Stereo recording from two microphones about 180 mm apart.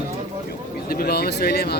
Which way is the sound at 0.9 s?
60° left (ahead or behind).